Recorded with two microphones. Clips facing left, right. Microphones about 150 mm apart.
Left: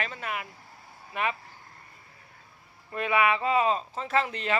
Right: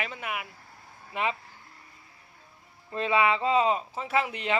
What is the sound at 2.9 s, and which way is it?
Speech, 25° right (ahead or behind).